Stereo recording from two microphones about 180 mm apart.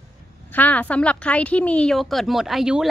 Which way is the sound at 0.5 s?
10° left (ahead or behind).